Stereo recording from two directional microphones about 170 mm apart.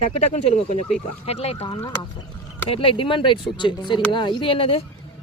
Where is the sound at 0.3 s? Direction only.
45° left (ahead or behind).